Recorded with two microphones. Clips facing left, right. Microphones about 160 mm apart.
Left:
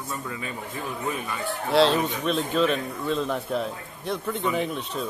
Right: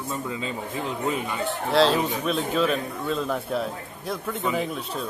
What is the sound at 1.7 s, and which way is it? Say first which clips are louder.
A man's voice: even; centre (ahead or behind).